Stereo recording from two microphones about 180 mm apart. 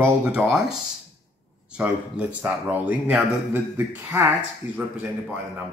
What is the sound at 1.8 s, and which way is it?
Speech, 5° right (ahead or behind).